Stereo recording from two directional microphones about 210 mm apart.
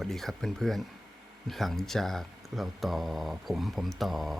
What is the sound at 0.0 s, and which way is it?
Speech, centre (ahead or behind).